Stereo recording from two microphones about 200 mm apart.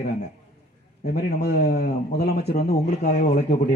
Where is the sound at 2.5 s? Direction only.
35° left (ahead or behind).